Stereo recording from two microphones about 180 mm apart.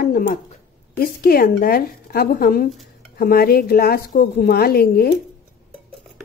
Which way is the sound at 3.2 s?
55° left (ahead or behind).